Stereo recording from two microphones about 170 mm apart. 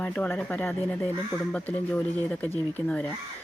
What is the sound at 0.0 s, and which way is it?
Speech, 10° left (ahead or behind).